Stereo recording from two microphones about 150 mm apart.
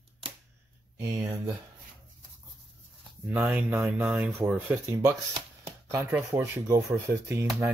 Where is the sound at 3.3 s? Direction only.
10° right (ahead or behind).